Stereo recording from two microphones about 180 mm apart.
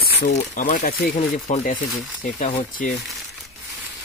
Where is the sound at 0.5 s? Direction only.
50° left (ahead or behind).